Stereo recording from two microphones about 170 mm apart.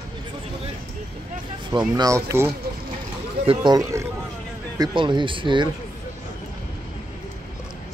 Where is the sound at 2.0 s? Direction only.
20° right (ahead or behind).